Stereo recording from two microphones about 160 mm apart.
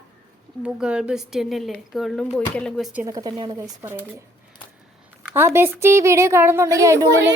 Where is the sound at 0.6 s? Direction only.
5° right (ahead or behind).